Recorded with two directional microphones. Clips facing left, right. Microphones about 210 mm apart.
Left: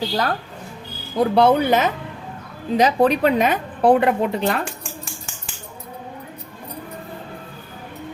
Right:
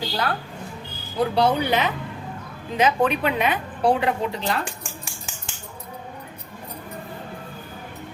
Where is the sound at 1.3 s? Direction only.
50° left (ahead or behind).